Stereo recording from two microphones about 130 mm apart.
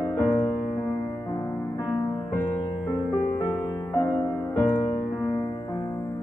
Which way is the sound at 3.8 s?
30° left (ahead or behind).